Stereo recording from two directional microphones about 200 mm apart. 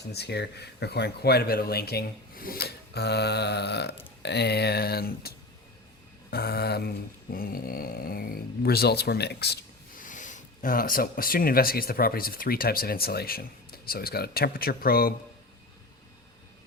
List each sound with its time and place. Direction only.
0.1 s speech: 55° left (ahead or behind)
6.3 s speech: 50° left (ahead or behind)
10.0 s speech: 40° left (ahead or behind)